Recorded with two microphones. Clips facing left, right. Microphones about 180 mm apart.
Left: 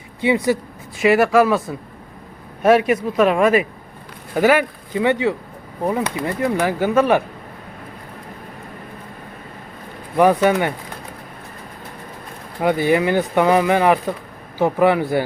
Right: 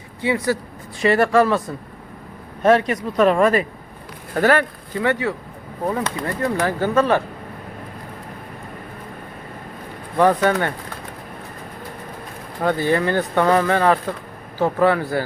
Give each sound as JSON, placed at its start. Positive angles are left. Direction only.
{"t": 0.2, "sound": "speech", "side_deg": 20}
{"t": 1.0, "sound": "speech", "side_deg": 5}
{"t": 2.6, "sound": "speech", "side_deg": 10}
{"t": 10.2, "sound": "speech", "side_deg": 10}
{"t": 12.6, "sound": "speech", "side_deg": 15}